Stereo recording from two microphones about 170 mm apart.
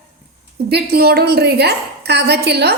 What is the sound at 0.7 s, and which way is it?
A woman's voice, 70° right (ahead or behind).